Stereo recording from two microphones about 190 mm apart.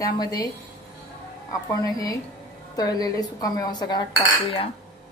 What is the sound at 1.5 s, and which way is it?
A woman's voice, 20° left (ahead or behind).